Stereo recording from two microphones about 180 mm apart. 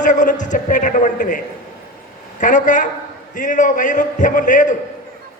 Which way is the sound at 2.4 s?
45° left (ahead or behind).